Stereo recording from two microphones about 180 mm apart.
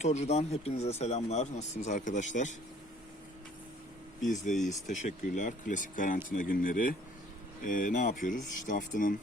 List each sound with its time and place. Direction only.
0.0 s speech: 40° left (ahead or behind)
4.3 s speech: 45° left (ahead or behind)